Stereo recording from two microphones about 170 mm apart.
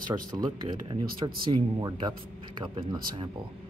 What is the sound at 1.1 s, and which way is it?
Speech, 30° right (ahead or behind).